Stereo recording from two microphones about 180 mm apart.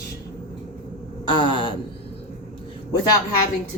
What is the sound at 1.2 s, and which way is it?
Speech, 25° left (ahead or behind).